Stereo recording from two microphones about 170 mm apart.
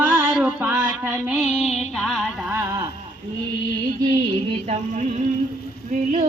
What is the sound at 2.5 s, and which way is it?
Mantra, 15° right (ahead or behind).